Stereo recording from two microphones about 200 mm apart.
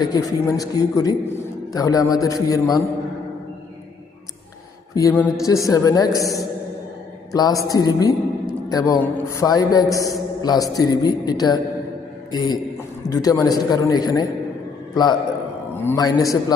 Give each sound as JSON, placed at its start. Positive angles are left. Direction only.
{"t": 0.0, "sound": "a man's voice", "side_deg": 20}
{"t": 4.9, "sound": "a man's voice", "side_deg": 15}
{"t": 15.7, "sound": "a man's voice", "side_deg": 10}